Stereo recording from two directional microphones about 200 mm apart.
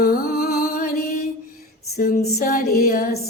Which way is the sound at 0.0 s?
45° left (ahead or behind).